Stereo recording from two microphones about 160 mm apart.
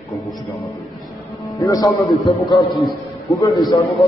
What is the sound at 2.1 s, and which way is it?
Speech, centre (ahead or behind).